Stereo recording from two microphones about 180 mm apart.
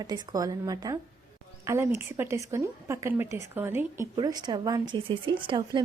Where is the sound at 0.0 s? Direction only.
20° right (ahead or behind).